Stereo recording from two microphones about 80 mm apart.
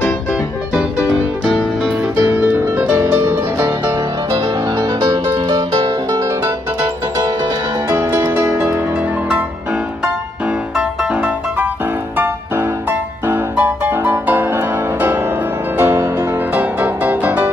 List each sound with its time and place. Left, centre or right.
0.7 s music: centre
3.1 s music: right
4.3 s music: right
6.2 s music: right
7.9 s music: right
10.8 s music: centre
13.3 s music: right
15.8 s music: right
16.5 s music: centre